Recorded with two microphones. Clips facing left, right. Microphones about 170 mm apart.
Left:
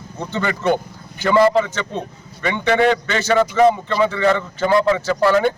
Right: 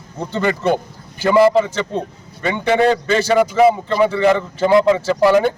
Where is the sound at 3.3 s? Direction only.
10° right (ahead or behind).